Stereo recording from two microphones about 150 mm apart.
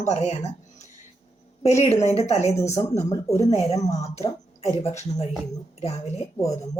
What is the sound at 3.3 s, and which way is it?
A woman's voice, 45° left (ahead or behind).